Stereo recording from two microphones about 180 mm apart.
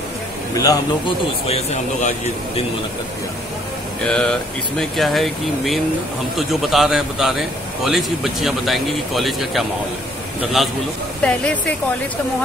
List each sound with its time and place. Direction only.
0.6 s a man's voice: 20° left (ahead or behind)
1.5 s speech: 40° left (ahead or behind)
4.0 s a man's voice: 5° left (ahead or behind)